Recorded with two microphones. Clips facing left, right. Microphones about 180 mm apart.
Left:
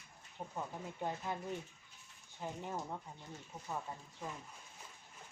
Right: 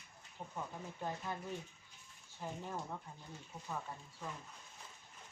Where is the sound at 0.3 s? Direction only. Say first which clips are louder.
Left 2 dB; 20° left (ahead or behind).